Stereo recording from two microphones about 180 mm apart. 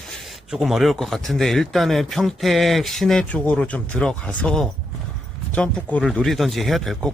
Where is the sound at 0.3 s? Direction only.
Centre (ahead or behind).